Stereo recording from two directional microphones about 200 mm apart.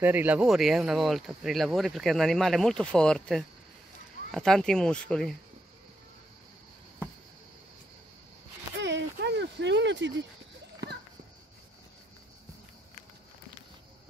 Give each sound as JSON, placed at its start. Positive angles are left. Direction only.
{"t": 0.0, "sound": "speech", "side_deg": -10}
{"t": 8.8, "sound": "a sound", "side_deg": -60}
{"t": 10.8, "sound": "children playing", "side_deg": -55}